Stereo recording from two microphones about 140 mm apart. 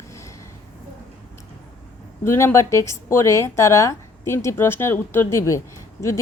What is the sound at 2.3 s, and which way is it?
A woman's voice, 20° left (ahead or behind).